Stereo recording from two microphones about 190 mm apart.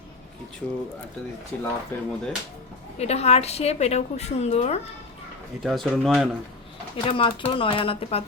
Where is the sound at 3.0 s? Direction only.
35° left (ahead or behind).